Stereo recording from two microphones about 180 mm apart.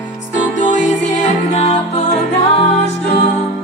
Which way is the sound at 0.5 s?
40° left (ahead or behind).